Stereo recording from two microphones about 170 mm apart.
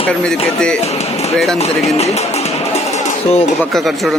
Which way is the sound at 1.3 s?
5° left (ahead or behind).